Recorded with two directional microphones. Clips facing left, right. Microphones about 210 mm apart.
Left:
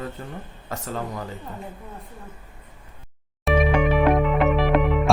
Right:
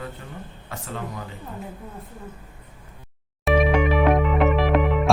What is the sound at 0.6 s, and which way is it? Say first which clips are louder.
Speech: left 4 dB; 40° left (ahead or behind).